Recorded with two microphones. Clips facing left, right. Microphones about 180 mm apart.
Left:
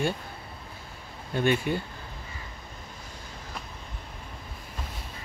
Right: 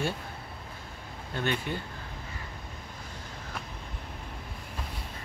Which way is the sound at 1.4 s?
10° left (ahead or behind).